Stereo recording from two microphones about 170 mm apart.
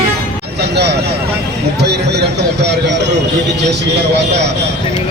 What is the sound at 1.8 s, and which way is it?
Speech, 75° right (ahead or behind).